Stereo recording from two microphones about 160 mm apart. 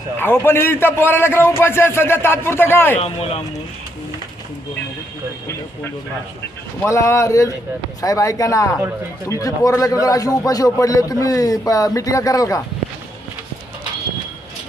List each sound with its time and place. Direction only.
0.2 s a man's voice: 15° left (ahead or behind)
3.0 s speech: 40° left (ahead or behind)
6.8 s a man's voice: 20° left (ahead or behind)